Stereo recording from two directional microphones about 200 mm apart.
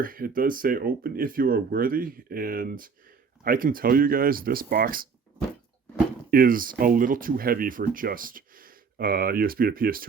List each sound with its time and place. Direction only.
0.0 s speech: 45° right (ahead or behind)
6.3 s speech: 45° right (ahead or behind)